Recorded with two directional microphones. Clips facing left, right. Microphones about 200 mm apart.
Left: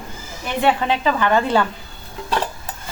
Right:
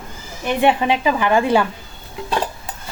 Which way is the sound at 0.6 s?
15° right (ahead or behind).